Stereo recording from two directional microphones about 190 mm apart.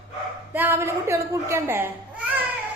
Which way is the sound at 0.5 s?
10° right (ahead or behind).